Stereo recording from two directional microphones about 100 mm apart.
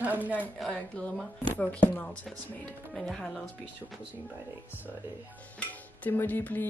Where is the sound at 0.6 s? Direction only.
10° left (ahead or behind).